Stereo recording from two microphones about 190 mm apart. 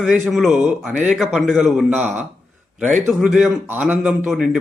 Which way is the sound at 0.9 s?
40° right (ahead or behind).